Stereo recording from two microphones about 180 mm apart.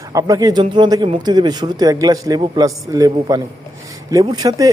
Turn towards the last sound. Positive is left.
turn(degrees=-20)  # may be behind; listen again after turning